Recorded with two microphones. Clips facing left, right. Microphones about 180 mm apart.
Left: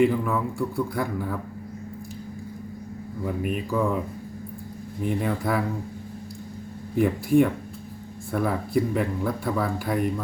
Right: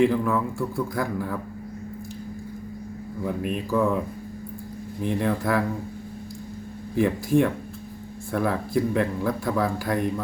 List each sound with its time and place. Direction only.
0.0 s speech: centre (ahead or behind)
3.2 s speech: 5° left (ahead or behind)
5.0 s speech: 5° left (ahead or behind)
7.0 s speech: centre (ahead or behind)